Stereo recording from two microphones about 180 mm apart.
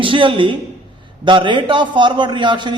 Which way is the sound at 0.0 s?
30° right (ahead or behind).